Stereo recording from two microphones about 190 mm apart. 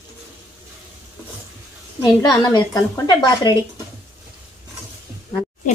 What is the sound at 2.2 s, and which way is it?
A woman's voice, 20° left (ahead or behind).